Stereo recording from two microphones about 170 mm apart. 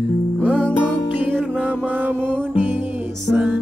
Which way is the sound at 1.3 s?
5° right (ahead or behind).